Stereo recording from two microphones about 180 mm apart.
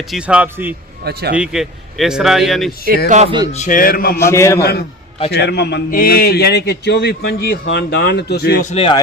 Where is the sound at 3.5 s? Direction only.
45° left (ahead or behind).